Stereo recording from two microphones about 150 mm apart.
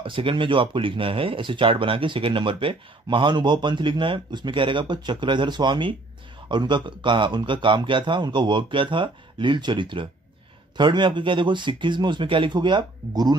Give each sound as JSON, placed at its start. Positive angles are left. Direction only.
{"t": 0.0, "sound": "speech", "side_deg": -35}